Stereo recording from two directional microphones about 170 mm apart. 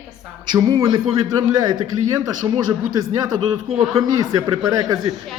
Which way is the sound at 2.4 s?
20° right (ahead or behind).